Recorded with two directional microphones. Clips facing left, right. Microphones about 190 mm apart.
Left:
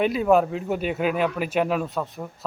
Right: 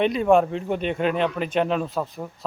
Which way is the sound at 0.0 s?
5° left (ahead or behind).